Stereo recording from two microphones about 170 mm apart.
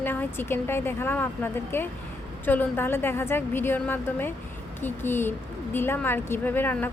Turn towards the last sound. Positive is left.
turn(degrees=10)  # may be behind; listen again after turning